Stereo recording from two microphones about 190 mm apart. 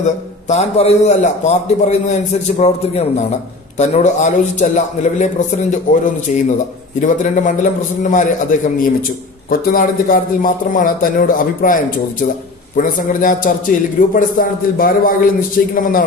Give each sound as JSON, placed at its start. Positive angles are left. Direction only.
{"t": 0.0, "sound": "a man's voice", "side_deg": 35}
{"t": 7.0, "sound": "a man's voice", "side_deg": 40}